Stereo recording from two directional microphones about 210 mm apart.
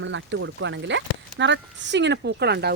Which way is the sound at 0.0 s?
60° right (ahead or behind).